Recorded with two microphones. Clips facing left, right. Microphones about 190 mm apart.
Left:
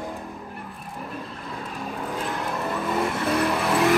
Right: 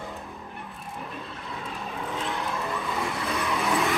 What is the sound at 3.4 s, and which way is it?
Vehicle, 60° left (ahead or behind).